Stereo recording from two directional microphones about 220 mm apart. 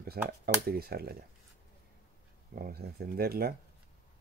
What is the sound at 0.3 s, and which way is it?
Speech, 45° right (ahead or behind).